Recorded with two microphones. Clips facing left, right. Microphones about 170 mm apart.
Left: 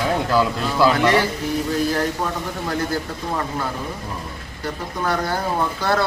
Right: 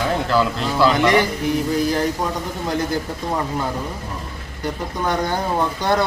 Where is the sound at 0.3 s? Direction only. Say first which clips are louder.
Right 1 dB; 10° left (ahead or behind).